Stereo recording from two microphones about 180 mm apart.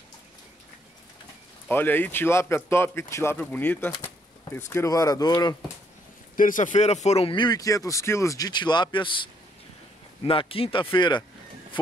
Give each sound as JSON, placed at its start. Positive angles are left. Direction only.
{"t": 1.7, "sound": "speech", "side_deg": 10}
{"t": 6.3, "sound": "speech", "side_deg": 50}
{"t": 10.5, "sound": "speech", "side_deg": 30}